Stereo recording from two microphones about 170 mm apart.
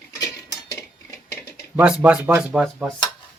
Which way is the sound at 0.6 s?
20° left (ahead or behind).